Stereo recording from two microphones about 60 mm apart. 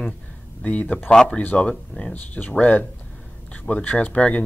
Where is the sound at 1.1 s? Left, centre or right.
Centre.